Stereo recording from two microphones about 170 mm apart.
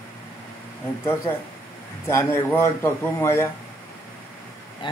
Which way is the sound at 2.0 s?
20° left (ahead or behind).